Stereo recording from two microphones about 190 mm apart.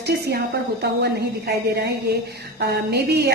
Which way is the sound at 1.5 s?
60° right (ahead or behind).